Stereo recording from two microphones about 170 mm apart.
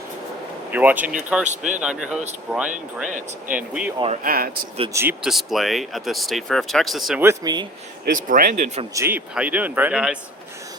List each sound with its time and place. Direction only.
0.7 s speech: 10° right (ahead or behind)
1.5 s speech: 45° right (ahead or behind)
1.8 s speech: 5° right (ahead or behind)
3.1 s speech: 50° right (ahead or behind)
3.5 s speech: 10° right (ahead or behind)
4.2 s speech: 60° right (ahead or behind)
4.9 s speech: 10° right (ahead or behind)
5.3 s speech: centre (ahead or behind)
7.2 s speech: 15° right (ahead or behind)
8.0 s speech: 60° right (ahead or behind)
8.9 s speech: 15° right (ahead or behind)